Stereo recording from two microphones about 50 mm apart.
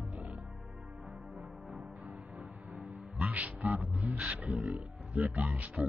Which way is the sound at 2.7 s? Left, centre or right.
Right.